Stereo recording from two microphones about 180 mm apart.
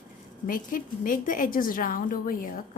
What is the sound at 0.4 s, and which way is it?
A woman's voice, 50° left (ahead or behind).